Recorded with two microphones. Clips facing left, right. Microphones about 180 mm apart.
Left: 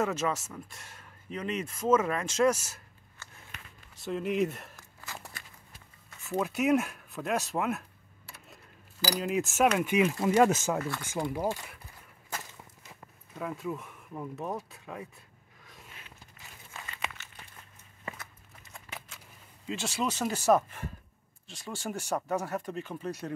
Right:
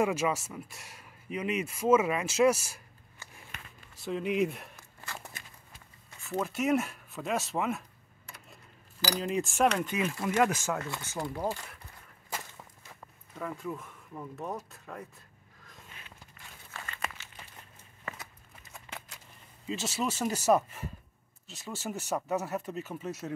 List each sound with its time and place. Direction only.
0.0 s speech: 10° right (ahead or behind)
3.9 s a sound: centre (ahead or behind)
6.2 s speech: centre (ahead or behind)
9.0 s speech: centre (ahead or behind)
10.3 s speech: 25° left (ahead or behind)
13.3 s speech: 5° left (ahead or behind)
18.6 s a sound: centre (ahead or behind)
19.7 s speech: 5° right (ahead or behind)